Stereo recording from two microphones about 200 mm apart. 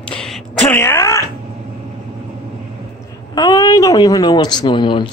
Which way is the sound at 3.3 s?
20° left (ahead or behind).